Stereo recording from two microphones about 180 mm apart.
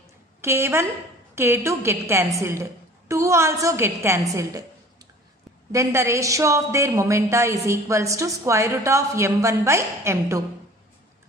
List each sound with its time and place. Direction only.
0.4 s a woman's voice: 15° right (ahead or behind)
5.7 s a woman's voice: 15° right (ahead or behind)